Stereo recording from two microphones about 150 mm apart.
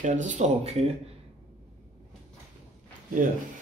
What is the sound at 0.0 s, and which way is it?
Speech, 55° right (ahead or behind).